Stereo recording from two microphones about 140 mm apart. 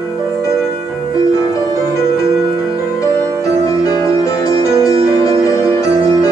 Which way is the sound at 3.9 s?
25° left (ahead or behind).